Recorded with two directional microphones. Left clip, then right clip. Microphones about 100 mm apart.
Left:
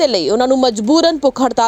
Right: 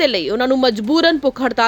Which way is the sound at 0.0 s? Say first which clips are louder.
Left 3 dB; 20° left (ahead or behind).